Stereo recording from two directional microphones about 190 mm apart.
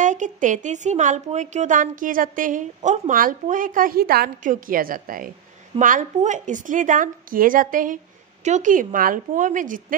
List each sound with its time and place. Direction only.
0.0 s a woman's voice: 40° right (ahead or behind)